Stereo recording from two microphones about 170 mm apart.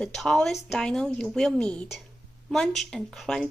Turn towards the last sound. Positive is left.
turn(degrees=5)  # may be behind; listen again after turning